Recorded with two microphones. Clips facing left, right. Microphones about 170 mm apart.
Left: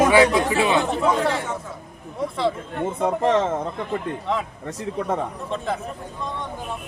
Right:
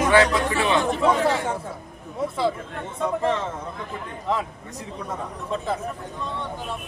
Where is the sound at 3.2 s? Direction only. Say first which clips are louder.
Left 6 dB; 70° left (ahead or behind).